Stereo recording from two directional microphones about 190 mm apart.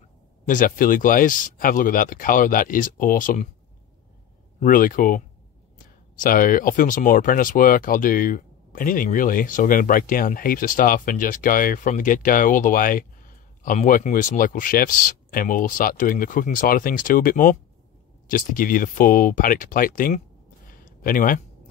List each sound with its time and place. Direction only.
0.5 s speech: 45° left (ahead or behind)
4.6 s speech: 45° left (ahead or behind)
20.6 s a sound: 50° left (ahead or behind)